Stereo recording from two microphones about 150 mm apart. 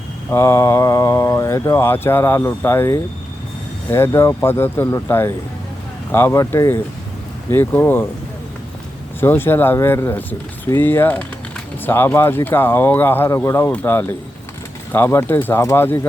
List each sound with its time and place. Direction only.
0.3 s speech: 20° left (ahead or behind)
9.2 s speech: 15° left (ahead or behind)